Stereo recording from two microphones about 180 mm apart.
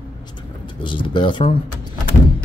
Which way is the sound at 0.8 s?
25° left (ahead or behind).